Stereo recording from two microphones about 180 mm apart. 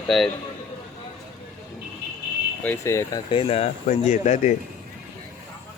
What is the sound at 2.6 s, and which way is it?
Speech, 10° left (ahead or behind).